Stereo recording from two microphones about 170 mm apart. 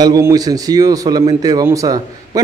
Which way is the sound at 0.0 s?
20° right (ahead or behind).